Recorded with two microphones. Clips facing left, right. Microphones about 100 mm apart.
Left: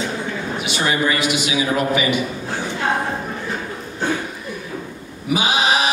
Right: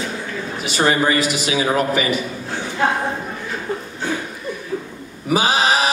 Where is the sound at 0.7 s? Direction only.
35° right (ahead or behind).